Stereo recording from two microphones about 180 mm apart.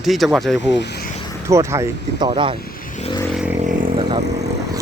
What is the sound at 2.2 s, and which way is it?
Speech, 30° right (ahead or behind).